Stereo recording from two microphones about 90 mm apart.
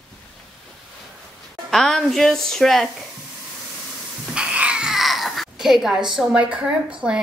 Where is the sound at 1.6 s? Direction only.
5° left (ahead or behind).